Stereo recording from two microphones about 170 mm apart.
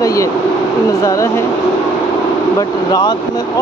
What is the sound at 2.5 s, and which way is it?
Speech, 25° left (ahead or behind).